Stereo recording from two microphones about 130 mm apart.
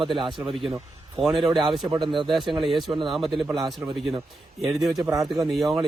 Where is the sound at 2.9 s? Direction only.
40° right (ahead or behind).